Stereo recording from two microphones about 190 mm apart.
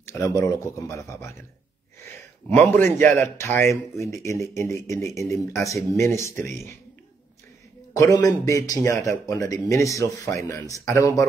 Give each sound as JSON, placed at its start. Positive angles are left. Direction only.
{"t": 0.0, "sound": "a sound", "side_deg": 15}
{"t": 0.4, "sound": "a man's voice", "side_deg": 15}
{"t": 2.5, "sound": "a man's voice", "side_deg": 10}
{"t": 7.9, "sound": "a man's voice", "side_deg": 20}